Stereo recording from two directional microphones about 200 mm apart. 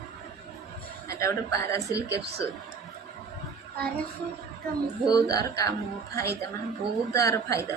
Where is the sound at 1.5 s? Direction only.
15° left (ahead or behind).